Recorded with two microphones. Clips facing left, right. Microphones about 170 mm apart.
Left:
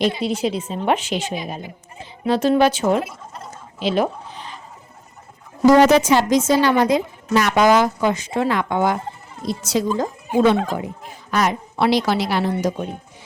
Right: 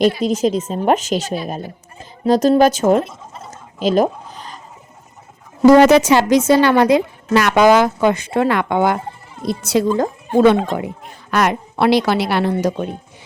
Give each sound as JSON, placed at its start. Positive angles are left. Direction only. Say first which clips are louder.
{"t": 0.2, "sound": "a woman's voice", "louder": "right 5 dB", "side_deg": -45}
{"t": 3.0, "sound": "speech", "louder": "right 3 dB", "side_deg": 0}
{"t": 3.8, "sound": "a sound", "louder": "right 5 dB", "side_deg": -40}
{"t": 5.6, "sound": "a woman's voice", "louder": "right 4 dB", "side_deg": -65}